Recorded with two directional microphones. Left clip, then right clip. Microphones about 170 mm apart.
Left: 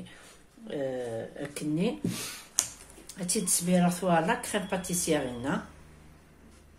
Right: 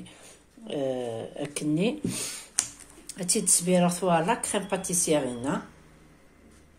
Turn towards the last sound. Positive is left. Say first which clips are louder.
# right 3 dB
turn(degrees=-25)  # may be behind; listen again after turning